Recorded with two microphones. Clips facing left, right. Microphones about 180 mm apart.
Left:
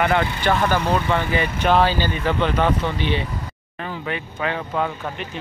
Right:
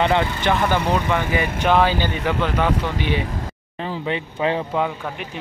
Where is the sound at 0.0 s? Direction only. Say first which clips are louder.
Right 1 dB; 20° right (ahead or behind).